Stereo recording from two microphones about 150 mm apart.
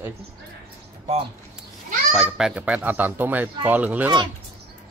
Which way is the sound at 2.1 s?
5° right (ahead or behind).